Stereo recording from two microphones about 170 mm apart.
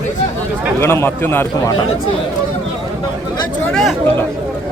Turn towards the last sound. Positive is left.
turn(degrees=5)  # may be behind; listen again after turning